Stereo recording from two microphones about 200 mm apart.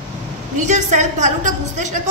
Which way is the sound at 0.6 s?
35° right (ahead or behind).